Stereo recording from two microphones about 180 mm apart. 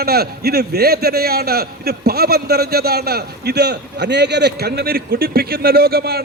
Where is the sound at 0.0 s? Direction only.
60° right (ahead or behind).